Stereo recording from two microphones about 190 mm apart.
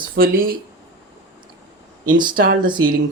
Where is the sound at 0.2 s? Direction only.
50° right (ahead or behind).